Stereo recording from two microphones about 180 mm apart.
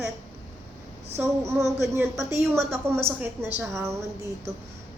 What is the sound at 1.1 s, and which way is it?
A woman's voice, 15° right (ahead or behind).